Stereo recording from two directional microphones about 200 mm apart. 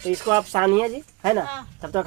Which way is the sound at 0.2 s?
20° right (ahead or behind).